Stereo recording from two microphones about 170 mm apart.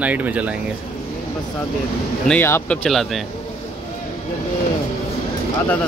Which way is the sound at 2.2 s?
10° left (ahead or behind).